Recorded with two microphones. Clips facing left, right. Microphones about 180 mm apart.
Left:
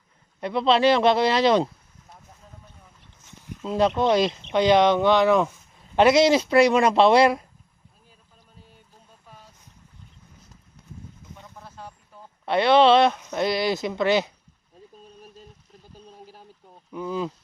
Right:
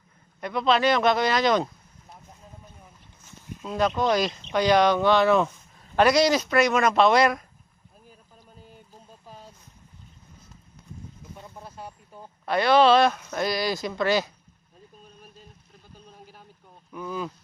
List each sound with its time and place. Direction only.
0.3 s speech: 30° left (ahead or behind)
3.6 s speech: 25° left (ahead or behind)
6.0 s speech: 25° left (ahead or behind)
9.2 s boat: 30° right (ahead or behind)
11.5 s vehicle: 15° right (ahead or behind)
12.5 s speech: 25° left (ahead or behind)
16.2 s boat: 35° left (ahead or behind)
16.9 s speech: 25° left (ahead or behind)